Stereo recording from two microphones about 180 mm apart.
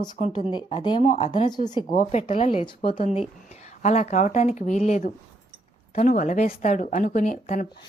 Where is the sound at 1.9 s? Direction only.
40° left (ahead or behind).